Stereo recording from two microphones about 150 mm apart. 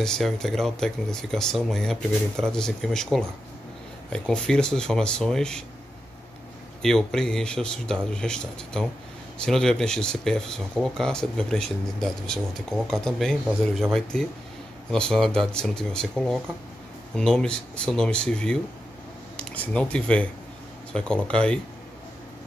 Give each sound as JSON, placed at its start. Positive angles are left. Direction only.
{"t": 0.0, "sound": "speech", "side_deg": 5}
{"t": 6.8, "sound": "speech", "side_deg": 5}
{"t": 14.9, "sound": "speech", "side_deg": 5}